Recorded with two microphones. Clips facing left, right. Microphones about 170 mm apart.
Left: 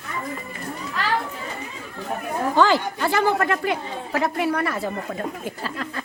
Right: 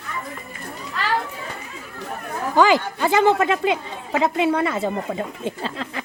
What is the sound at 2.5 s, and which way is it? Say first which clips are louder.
A man's voice: right 3 dB; 15° right (ahead or behind).